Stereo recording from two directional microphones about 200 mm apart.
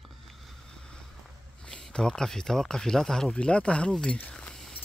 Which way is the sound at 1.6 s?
5° left (ahead or behind).